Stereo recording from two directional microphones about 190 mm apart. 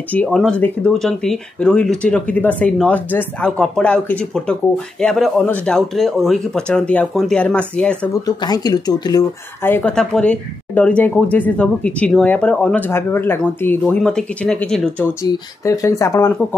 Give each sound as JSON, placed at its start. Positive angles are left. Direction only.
{"t": 0.1, "sound": "speech", "side_deg": 5}
{"t": 8.3, "sound": "speech", "side_deg": 20}